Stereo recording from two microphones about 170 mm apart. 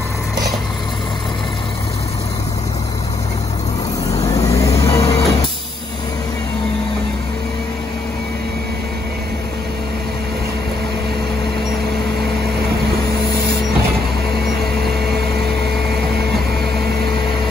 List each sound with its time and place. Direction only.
4.3 s music: 20° left (ahead or behind)